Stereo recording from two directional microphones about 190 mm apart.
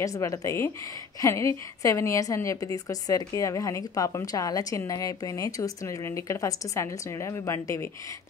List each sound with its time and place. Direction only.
0.0 s a woman's voice: 15° left (ahead or behind)